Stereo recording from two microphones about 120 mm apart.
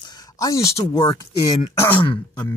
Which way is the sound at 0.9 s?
30° left (ahead or behind).